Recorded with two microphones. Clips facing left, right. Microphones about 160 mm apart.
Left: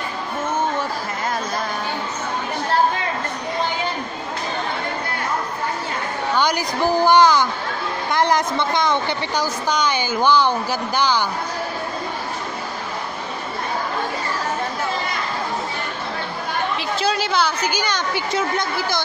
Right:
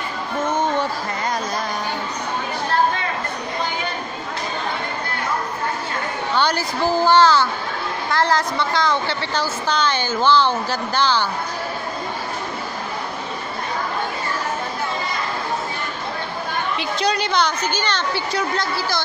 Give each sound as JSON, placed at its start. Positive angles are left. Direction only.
{"t": 6.3, "sound": "a woman's voice", "side_deg": 10}
{"t": 16.7, "sound": "a woman's voice", "side_deg": 5}